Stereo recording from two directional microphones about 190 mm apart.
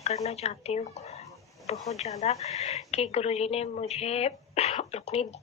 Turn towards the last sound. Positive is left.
turn(degrees=35)  # may be behind; listen again after turning